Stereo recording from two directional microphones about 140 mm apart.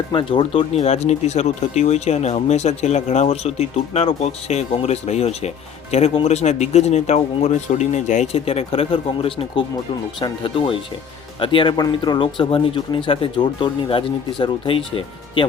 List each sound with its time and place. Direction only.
0.1 s speech: 35° left (ahead or behind)
0.8 s speech: 50° left (ahead or behind)